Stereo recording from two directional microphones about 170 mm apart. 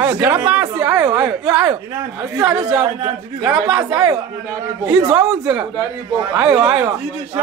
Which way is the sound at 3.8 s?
20° right (ahead or behind).